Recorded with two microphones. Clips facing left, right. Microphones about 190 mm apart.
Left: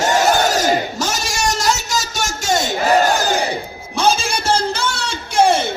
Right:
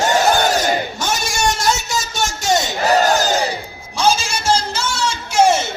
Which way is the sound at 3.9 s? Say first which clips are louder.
Even; 60° left (ahead or behind).